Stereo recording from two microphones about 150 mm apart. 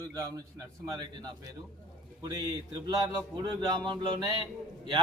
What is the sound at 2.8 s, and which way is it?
A man's voice, 25° right (ahead or behind).